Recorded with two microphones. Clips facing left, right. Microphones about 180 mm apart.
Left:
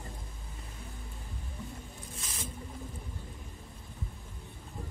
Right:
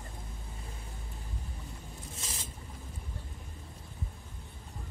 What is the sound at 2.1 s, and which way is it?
Boat, 25° right (ahead or behind).